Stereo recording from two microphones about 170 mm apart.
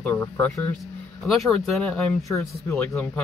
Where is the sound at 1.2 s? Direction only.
Centre (ahead or behind).